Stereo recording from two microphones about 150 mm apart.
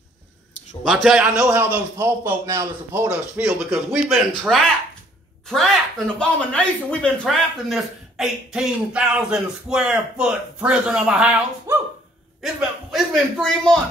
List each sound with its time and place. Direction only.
0.8 s a man's voice: centre (ahead or behind); by 3.1 s 20° right (ahead or behind)
3.1 s a man's voice: 10° right (ahead or behind)
5.5 s speech: centre (ahead or behind)
11.7 s speech: 15° right (ahead or behind)
12.4 s speech: centre (ahead or behind)